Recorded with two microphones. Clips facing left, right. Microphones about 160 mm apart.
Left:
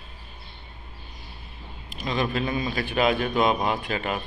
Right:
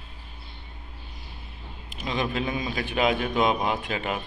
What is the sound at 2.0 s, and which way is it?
A man's voice, 15° right (ahead or behind).